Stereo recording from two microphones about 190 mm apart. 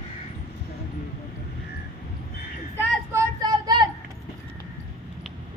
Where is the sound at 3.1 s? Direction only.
15° right (ahead or behind).